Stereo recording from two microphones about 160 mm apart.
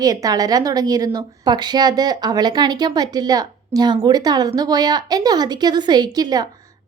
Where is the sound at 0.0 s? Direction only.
20° right (ahead or behind).